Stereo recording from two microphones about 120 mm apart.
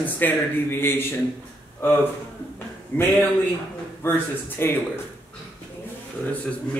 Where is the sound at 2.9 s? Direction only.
10° left (ahead or behind).